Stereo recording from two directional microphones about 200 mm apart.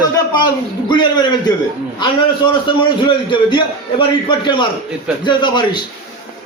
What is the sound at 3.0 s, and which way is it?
A man's voice, 25° left (ahead or behind).